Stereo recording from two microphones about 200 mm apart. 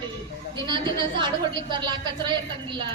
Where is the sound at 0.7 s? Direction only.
20° right (ahead or behind).